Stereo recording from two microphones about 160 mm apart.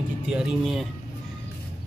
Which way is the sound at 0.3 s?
5° right (ahead or behind).